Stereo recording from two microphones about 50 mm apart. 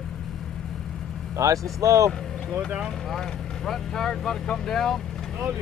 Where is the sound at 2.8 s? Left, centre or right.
Centre.